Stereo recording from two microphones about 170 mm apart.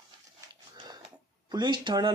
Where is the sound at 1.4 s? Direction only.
25° right (ahead or behind).